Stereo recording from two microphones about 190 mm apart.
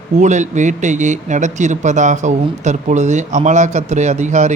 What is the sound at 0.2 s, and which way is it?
Speech, 40° right (ahead or behind).